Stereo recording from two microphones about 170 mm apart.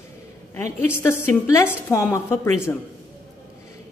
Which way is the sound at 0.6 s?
15° left (ahead or behind).